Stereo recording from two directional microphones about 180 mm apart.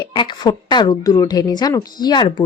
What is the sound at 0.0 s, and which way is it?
Speech, 25° left (ahead or behind).